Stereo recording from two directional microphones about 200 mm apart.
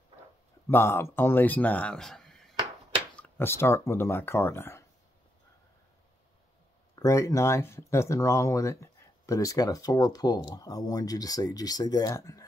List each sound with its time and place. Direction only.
0.7 s speech: 10° left (ahead or behind)
7.0 s speech: 15° left (ahead or behind)